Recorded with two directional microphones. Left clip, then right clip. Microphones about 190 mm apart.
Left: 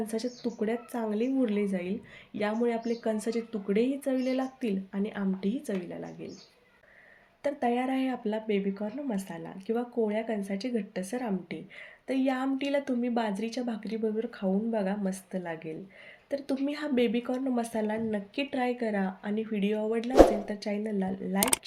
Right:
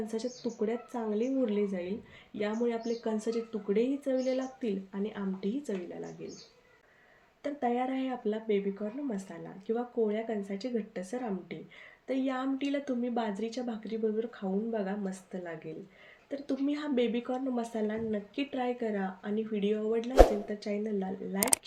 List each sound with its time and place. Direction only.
0.0 s a woman's voice: 30° left (ahead or behind)
7.4 s a woman's voice: 30° left (ahead or behind)